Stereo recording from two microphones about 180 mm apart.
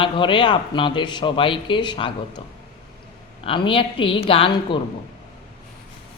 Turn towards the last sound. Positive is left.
turn(degrees=30)  # may be behind; listen again after turning